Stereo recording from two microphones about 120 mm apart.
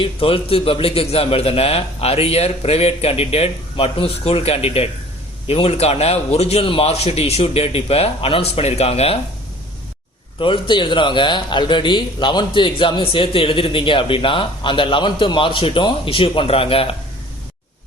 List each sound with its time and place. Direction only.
0.0 s a man's voice: 50° left (ahead or behind)
10.4 s a man's voice: 45° left (ahead or behind)